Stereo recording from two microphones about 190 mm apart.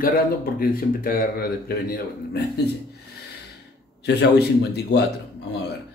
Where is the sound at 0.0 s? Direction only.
50° left (ahead or behind).